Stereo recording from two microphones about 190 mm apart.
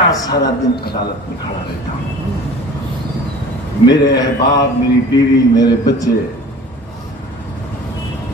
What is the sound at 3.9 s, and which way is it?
A man's voice, 20° left (ahead or behind).